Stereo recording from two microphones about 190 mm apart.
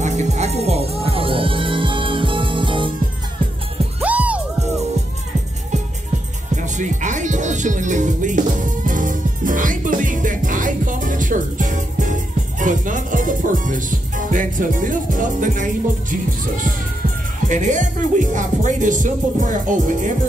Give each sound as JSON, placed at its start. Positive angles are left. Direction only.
{"t": 0.0, "sound": "music", "side_deg": -35}
{"t": 4.0, "sound": "music", "side_deg": -5}
{"t": 6.5, "sound": "music", "side_deg": -40}